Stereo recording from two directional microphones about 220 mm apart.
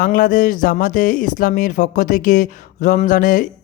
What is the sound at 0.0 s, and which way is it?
Speech, 40° left (ahead or behind).